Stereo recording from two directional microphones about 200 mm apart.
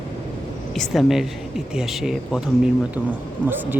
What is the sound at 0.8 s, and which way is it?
Speech, centre (ahead or behind).